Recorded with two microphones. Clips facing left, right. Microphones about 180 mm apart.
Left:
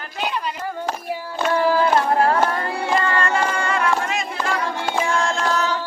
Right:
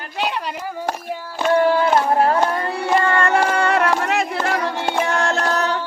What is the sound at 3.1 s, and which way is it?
Music, 65° right (ahead or behind).